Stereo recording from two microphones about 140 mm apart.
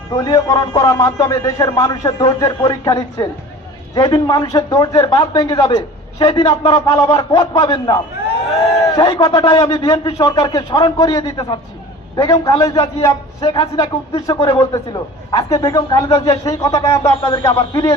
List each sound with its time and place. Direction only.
0.2 s a man's voice: 25° left (ahead or behind)
6.8 s a man's voice: 25° left (ahead or behind)